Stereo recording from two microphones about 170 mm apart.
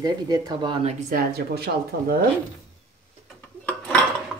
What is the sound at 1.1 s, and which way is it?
Speech, 65° right (ahead or behind).